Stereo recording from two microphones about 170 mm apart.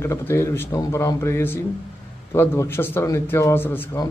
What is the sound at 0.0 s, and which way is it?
A man's voice, 15° left (ahead or behind).